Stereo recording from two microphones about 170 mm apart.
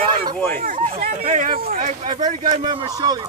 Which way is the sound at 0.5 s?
50° right (ahead or behind).